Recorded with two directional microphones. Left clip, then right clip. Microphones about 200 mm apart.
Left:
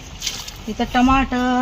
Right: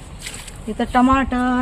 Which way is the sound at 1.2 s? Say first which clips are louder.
Left 1 dB; 15° right (ahead or behind).